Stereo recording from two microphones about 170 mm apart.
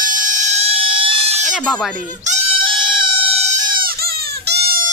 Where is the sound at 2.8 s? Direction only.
30° right (ahead or behind); by 4.8 s 65° right (ahead or behind).